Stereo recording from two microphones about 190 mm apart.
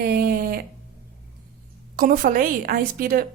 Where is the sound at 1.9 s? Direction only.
45° right (ahead or behind).